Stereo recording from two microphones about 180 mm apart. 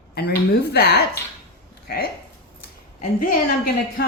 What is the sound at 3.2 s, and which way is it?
Speech, 50° left (ahead or behind).